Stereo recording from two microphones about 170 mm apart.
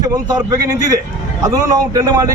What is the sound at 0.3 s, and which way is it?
Speech, 20° right (ahead or behind).